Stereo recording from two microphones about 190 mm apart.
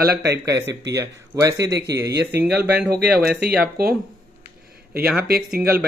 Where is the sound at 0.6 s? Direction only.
70° right (ahead or behind).